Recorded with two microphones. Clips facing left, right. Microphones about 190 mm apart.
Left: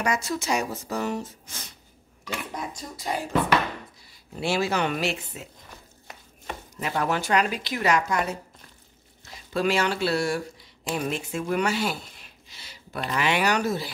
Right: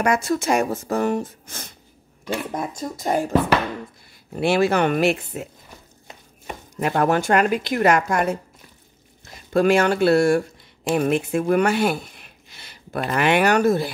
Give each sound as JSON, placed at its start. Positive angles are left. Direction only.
{"t": 0.0, "sound": "speech", "side_deg": -55}
{"t": 6.8, "sound": "speech", "side_deg": -55}
{"t": 9.5, "sound": "speech", "side_deg": -50}